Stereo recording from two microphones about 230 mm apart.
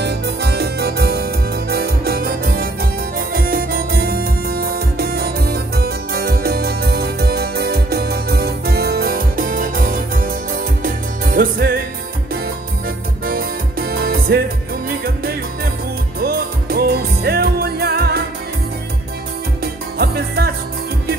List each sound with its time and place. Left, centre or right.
0.0 s music: right
13.2 s music: right
19.6 s music: right